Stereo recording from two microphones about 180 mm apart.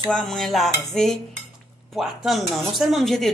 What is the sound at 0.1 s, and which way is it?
Speech, centre (ahead or behind).